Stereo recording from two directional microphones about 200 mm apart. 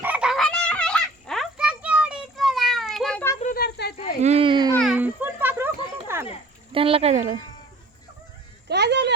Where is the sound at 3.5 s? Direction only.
50° left (ahead or behind).